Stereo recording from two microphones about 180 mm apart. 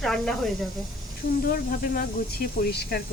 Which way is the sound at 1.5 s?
55° left (ahead or behind).